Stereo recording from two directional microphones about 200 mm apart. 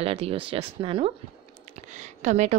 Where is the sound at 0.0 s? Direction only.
30° right (ahead or behind).